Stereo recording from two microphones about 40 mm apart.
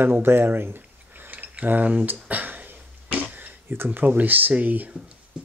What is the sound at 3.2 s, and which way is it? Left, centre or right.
Finger snapping, right.